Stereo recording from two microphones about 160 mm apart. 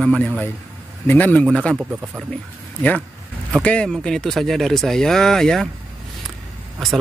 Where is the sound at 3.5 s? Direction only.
5° left (ahead or behind).